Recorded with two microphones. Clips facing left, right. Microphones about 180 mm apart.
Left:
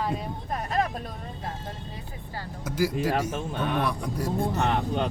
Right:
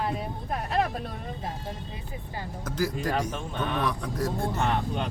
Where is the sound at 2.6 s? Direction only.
10° left (ahead or behind).